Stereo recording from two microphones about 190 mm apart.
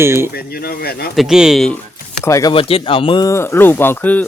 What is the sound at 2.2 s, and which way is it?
Speech, 15° left (ahead or behind).